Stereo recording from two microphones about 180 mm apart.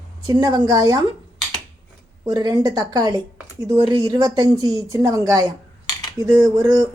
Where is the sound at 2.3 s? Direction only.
20° right (ahead or behind).